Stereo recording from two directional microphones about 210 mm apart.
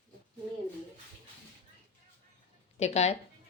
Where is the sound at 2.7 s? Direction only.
30° left (ahead or behind).